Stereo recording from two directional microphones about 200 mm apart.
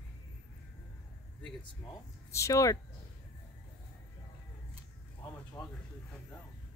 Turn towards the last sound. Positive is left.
turn(degrees=10)  # may be behind; listen again after turning